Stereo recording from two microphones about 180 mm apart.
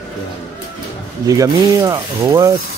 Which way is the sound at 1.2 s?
20° right (ahead or behind).